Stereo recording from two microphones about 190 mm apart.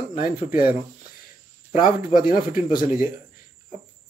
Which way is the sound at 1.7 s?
45° left (ahead or behind).